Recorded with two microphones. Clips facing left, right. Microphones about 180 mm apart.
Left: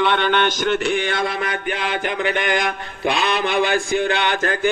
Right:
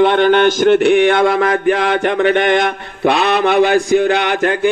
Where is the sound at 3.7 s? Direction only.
35° right (ahead or behind).